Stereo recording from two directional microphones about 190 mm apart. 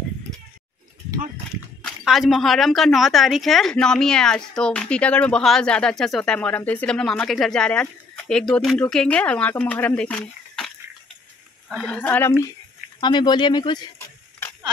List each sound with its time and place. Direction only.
1.9 s a woman's voice: centre (ahead or behind)
11.7 s speech: 5° left (ahead or behind)
13.0 s speech: 20° left (ahead or behind)
13.9 s a sound: 10° left (ahead or behind)